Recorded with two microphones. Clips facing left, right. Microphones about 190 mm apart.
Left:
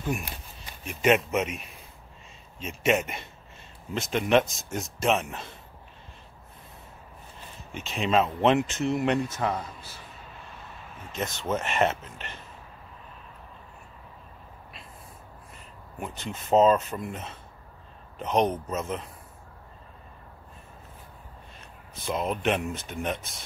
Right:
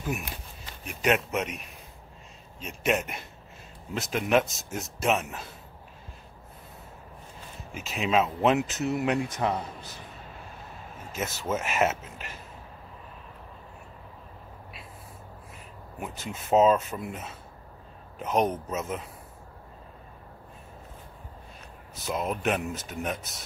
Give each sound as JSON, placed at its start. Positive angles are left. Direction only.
{"t": 0.8, "sound": "speech", "side_deg": 0}
{"t": 7.7, "sound": "speech", "side_deg": -5}
{"t": 9.3, "sound": "speech", "side_deg": -15}
{"t": 11.1, "sound": "speech", "side_deg": -5}
{"t": 16.0, "sound": "speech", "side_deg": -5}
{"t": 22.0, "sound": "speech", "side_deg": -5}